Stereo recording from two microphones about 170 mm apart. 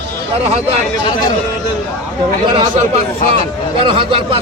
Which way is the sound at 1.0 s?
25° left (ahead or behind).